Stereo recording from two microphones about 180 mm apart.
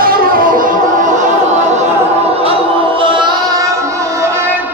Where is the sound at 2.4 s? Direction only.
30° right (ahead or behind).